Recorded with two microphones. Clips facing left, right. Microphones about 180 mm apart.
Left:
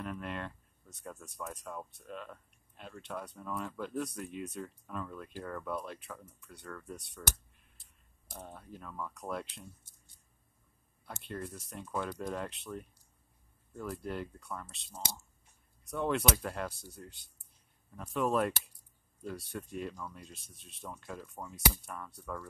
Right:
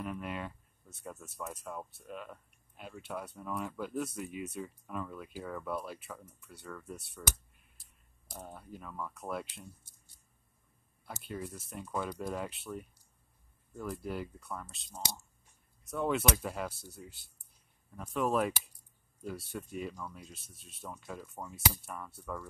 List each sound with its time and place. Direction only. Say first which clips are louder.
0.0 s speech: right 1 dB; 5° right (ahead or behind)
8.3 s speech: right 1 dB; 5° right (ahead or behind)
11.1 s speech: even; 5° right (ahead or behind)